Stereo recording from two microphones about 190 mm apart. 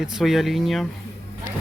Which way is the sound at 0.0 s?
Centre (ahead or behind).